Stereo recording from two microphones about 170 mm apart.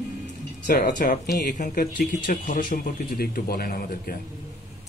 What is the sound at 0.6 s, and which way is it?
Speech, 50° left (ahead or behind).